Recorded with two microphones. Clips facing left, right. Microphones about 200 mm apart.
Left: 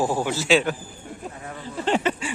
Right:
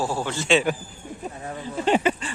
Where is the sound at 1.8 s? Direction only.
10° right (ahead or behind).